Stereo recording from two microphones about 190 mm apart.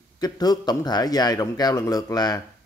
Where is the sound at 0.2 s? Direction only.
20° left (ahead or behind).